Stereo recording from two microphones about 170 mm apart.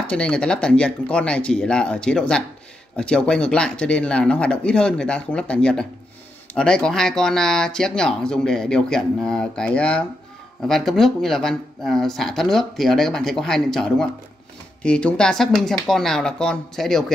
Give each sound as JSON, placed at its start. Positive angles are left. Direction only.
{"t": 0.0, "sound": "speech", "side_deg": 5}